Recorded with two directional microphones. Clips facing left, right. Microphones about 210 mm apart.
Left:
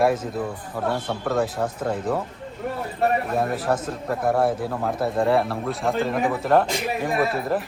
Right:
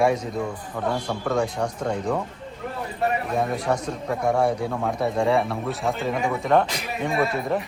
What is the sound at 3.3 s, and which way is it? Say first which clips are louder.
Speech: left 1 dB; 5° left (ahead or behind).